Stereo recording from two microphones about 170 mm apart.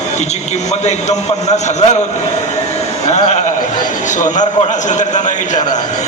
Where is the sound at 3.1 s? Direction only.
40° left (ahead or behind).